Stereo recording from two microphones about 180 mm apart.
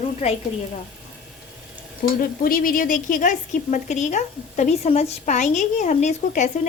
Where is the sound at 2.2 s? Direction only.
55° left (ahead or behind).